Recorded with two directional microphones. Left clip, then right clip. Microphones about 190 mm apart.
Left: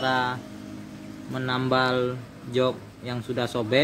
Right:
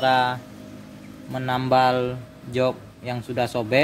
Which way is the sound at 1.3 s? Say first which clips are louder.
Right 4 dB; 25° right (ahead or behind).